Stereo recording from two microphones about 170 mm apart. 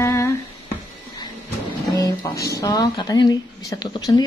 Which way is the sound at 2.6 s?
25° left (ahead or behind).